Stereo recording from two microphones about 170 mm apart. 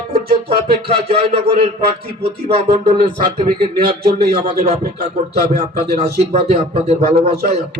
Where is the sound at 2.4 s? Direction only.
35° right (ahead or behind).